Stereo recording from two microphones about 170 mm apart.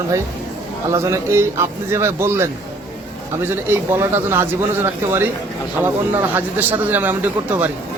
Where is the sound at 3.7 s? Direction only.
15° right (ahead or behind).